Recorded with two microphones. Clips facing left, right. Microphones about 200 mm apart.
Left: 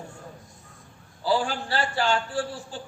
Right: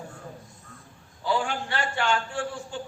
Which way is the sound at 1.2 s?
35° left (ahead or behind).